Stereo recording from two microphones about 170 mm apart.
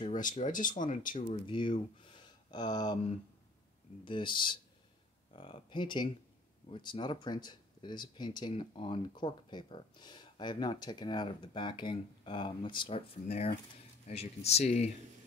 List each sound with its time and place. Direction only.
0.0 s speech: 50° left (ahead or behind)
1.3 s speech: 30° left (ahead or behind)
4.0 s speech: 30° left (ahead or behind)